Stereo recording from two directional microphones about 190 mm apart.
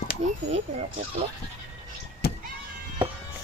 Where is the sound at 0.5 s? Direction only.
35° right (ahead or behind).